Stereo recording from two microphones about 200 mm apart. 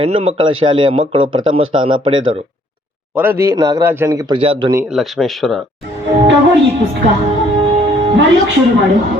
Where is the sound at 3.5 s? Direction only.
15° right (ahead or behind).